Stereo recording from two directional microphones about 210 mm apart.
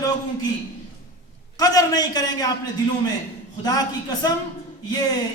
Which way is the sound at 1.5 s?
15° left (ahead or behind).